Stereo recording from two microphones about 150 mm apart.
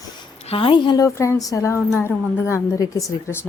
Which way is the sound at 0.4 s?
35° left (ahead or behind).